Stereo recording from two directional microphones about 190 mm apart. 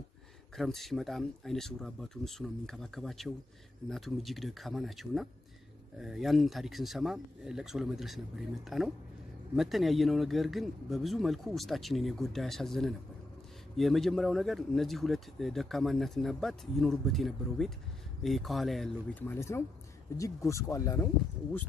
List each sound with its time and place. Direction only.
0.6 s speech: centre (ahead or behind)